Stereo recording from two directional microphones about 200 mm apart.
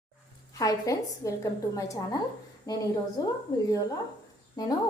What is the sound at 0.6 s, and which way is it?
Speech, 15° left (ahead or behind).